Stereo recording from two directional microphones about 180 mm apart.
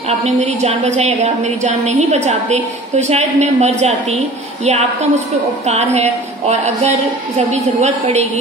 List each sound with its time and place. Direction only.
0.2 s a woman's voice: 40° right (ahead or behind)
5.7 s a woman's voice: 35° right (ahead or behind)